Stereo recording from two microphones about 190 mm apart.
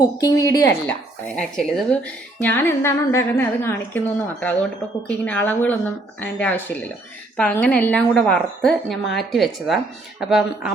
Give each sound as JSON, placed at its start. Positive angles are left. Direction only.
{"t": 0.2, "sound": "speech", "side_deg": 15}
{"t": 1.4, "sound": "a woman's voice", "side_deg": 5}